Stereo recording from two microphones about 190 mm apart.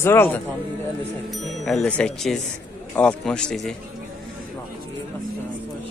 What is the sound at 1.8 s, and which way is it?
Speech, 5° left (ahead or behind).